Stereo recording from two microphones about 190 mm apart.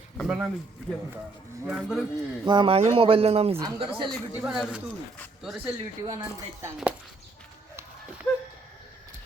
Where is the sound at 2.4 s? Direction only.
25° right (ahead or behind).